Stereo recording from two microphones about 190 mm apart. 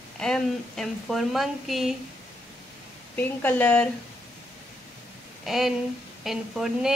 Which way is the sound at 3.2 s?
10° left (ahead or behind).